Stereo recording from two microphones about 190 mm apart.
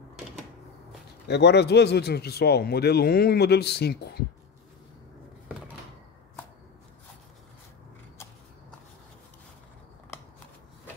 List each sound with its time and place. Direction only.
1.2 s a man's voice: 60° left (ahead or behind)